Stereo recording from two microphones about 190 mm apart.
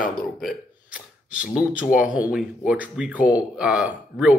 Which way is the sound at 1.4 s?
5° right (ahead or behind).